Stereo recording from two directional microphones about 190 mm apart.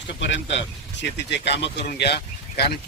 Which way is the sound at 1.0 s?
65° left (ahead or behind).